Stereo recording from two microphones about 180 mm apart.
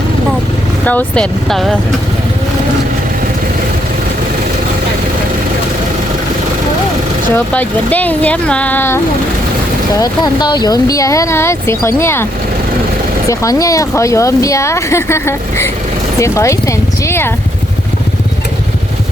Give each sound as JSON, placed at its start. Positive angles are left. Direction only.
{"t": 0.9, "sound": "speech", "side_deg": 5}
{"t": 7.3, "sound": "speech", "side_deg": 10}
{"t": 10.0, "sound": "speech", "side_deg": 25}